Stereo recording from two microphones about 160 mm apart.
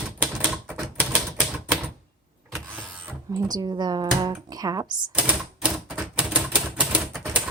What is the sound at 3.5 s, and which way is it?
Speech, 25° right (ahead or behind).